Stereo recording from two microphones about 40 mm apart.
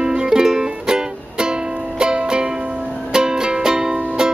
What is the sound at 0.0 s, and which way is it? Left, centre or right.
Music, centre.